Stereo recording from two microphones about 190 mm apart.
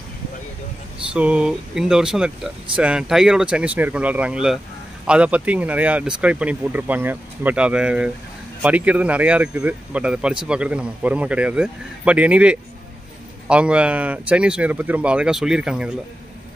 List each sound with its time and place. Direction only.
1.1 s speech: 5° right (ahead or behind)